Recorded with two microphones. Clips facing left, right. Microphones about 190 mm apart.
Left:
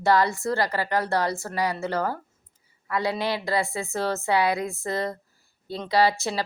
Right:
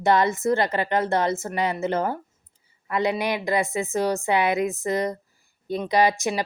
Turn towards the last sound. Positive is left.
turn(degrees=-15)  # may be behind; listen again after turning